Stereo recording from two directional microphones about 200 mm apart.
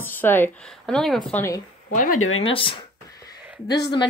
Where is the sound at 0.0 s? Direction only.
10° left (ahead or behind).